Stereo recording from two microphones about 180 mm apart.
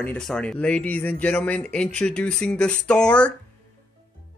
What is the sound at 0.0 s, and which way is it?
Speech, 5° left (ahead or behind).